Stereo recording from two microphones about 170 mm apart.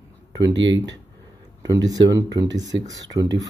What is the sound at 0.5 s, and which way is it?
Speech, 90° right.